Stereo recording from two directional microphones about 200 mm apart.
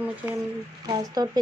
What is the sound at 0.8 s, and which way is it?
Speech, 20° right (ahead or behind).